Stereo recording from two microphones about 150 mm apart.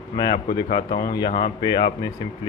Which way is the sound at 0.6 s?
50° left (ahead or behind).